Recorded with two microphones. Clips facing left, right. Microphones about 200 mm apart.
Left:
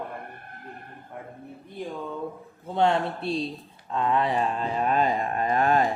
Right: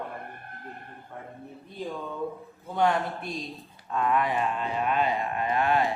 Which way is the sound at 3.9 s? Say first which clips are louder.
Left 2 dB; 25° left (ahead or behind).